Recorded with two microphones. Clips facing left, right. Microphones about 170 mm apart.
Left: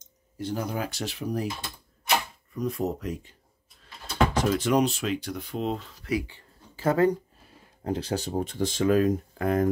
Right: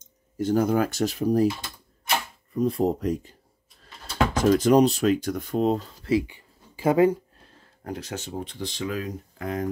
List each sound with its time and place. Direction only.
0.4 s speech: 50° right (ahead or behind)
2.5 s speech: 30° right (ahead or behind)
5.9 s a sound: 30° right (ahead or behind)
6.2 s a sound: 10° right (ahead or behind)
7.8 s speech: 30° left (ahead or behind)
8.3 s speech: 45° left (ahead or behind)